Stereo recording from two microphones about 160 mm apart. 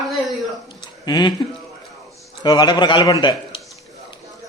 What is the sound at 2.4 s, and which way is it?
A man's voice, 25° left (ahead or behind).